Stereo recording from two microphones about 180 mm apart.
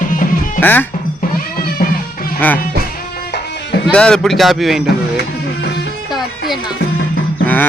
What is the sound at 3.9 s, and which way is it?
Speech, 5° left (ahead or behind).